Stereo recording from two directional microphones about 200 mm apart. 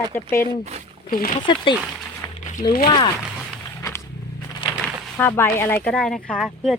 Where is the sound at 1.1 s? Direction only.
45° left (ahead or behind).